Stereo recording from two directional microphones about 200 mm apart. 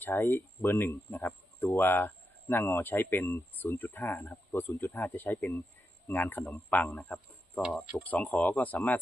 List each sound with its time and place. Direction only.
0.0 s speech: 10° left (ahead or behind)